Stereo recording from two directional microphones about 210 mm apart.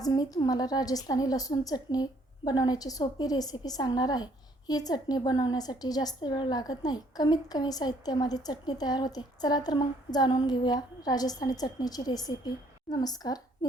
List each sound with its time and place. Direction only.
0.0 s a woman's voice: 15° left (ahead or behind)